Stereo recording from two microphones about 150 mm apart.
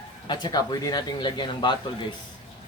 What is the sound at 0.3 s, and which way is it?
Speech, 30° left (ahead or behind).